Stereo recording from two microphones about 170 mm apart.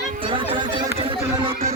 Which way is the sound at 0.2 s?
30° right (ahead or behind).